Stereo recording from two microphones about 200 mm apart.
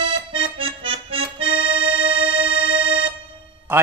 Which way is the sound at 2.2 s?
25° right (ahead or behind).